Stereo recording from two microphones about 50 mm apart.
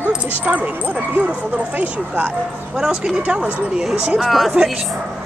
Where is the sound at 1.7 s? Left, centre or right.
Right.